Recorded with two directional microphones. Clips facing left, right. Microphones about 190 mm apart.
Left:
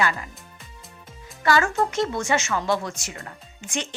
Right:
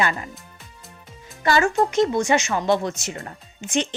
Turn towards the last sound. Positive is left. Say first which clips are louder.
# right 7 dB
turn(degrees=-20)  # may be behind; listen again after turning